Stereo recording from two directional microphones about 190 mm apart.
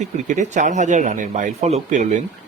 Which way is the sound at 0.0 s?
40° right (ahead or behind).